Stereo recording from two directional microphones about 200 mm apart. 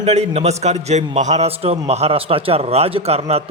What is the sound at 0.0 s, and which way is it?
A man's voice, 35° right (ahead or behind).